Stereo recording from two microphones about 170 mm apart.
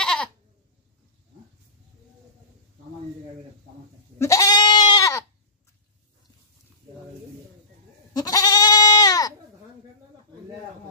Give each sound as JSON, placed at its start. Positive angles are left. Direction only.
{"t": 0.0, "sound": "goat", "side_deg": 5}
{"t": 4.2, "sound": "goat", "side_deg": 20}
{"t": 8.1, "sound": "goat", "side_deg": 20}